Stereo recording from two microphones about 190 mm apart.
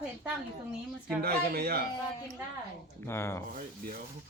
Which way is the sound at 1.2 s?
55° right (ahead or behind).